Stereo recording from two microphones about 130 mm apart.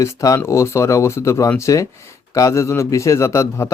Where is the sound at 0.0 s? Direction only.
25° left (ahead or behind).